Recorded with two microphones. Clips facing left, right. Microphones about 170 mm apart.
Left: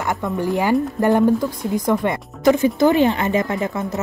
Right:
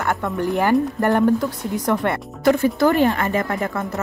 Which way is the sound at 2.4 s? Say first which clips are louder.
Left 2 dB; 55° right (ahead or behind).